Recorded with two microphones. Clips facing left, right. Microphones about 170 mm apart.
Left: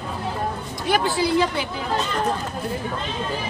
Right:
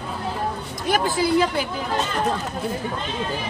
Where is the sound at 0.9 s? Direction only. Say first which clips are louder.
Even; 45° right (ahead or behind).